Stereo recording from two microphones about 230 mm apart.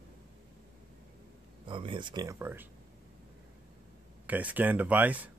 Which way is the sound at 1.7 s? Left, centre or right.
Right.